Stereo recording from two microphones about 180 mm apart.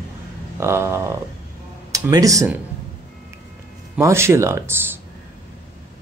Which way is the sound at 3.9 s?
15° right (ahead or behind).